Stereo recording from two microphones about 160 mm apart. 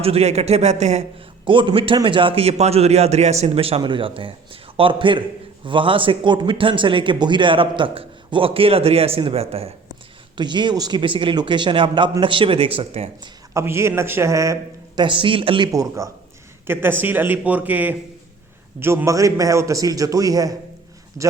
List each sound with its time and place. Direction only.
0.0 s speech: 40° right (ahead or behind)
1.5 s speech: 30° right (ahead or behind)
13.5 s a man's voice: 15° right (ahead or behind)
15.0 s a man's voice: 30° right (ahead or behind)